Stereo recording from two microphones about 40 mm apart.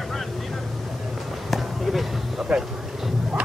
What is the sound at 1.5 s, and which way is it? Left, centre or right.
Basketball bounce, centre.